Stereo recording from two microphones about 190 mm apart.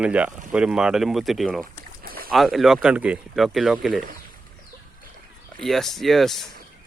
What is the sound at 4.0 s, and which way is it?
Speech, 45° right (ahead or behind).